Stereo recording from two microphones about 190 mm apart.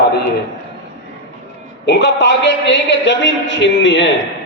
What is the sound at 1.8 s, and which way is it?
A man's voice, 65° left (ahead or behind).